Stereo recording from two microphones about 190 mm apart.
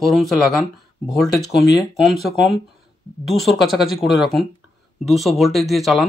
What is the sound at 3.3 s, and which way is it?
Speech, centre (ahead or behind).